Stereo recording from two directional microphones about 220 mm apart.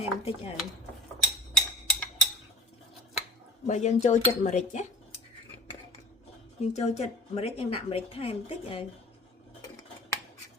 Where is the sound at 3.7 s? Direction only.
30° left (ahead or behind).